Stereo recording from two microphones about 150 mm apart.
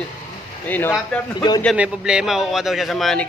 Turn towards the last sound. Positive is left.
turn(degrees=5)  # may be behind; listen again after turning